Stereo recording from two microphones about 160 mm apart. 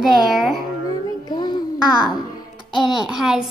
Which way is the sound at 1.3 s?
25° left (ahead or behind).